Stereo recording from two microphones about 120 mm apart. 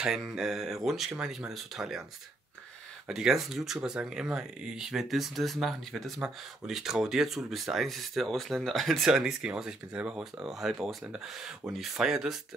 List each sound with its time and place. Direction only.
0.0 s speech: 5° right (ahead or behind)
3.1 s speech: 5° right (ahead or behind)